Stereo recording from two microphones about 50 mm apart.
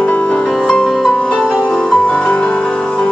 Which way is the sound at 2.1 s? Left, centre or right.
Left.